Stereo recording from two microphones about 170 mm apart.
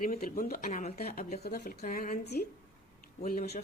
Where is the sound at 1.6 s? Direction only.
50° left (ahead or behind).